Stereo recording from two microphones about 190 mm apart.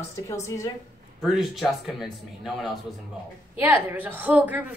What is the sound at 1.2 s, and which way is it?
A woman's voice, centre (ahead or behind).